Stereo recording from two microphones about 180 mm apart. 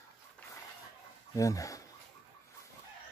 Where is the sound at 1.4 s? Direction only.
20° left (ahead or behind).